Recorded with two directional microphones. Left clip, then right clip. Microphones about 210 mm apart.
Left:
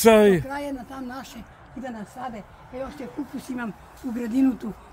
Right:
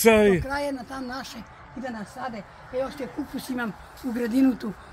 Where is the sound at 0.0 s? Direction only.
20° left (ahead or behind).